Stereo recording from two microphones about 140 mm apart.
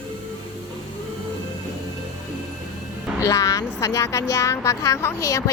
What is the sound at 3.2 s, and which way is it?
A woman's voice, 25° left (ahead or behind).